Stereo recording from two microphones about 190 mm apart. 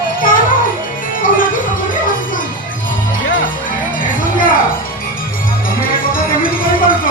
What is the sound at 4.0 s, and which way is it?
Music, 45° left (ahead or behind).